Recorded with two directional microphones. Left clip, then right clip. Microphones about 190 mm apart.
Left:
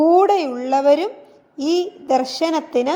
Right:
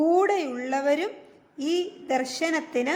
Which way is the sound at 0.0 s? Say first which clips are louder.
Left 8 dB; 20° left (ahead or behind).